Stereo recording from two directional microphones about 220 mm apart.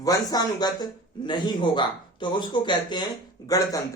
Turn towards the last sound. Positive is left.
turn(degrees=15)  # may be behind; listen again after turning